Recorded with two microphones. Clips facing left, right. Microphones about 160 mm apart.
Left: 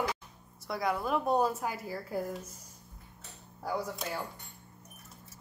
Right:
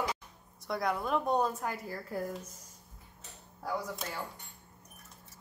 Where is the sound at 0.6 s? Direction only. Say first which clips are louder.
Left 1 dB; centre (ahead or behind).